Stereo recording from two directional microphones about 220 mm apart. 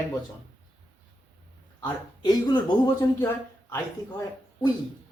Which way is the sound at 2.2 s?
20° left (ahead or behind).